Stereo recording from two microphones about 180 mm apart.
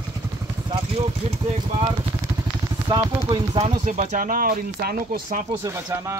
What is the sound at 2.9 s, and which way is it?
Speech, 25° right (ahead or behind).